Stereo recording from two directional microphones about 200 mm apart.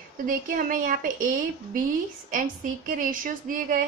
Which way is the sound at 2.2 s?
40° right (ahead or behind).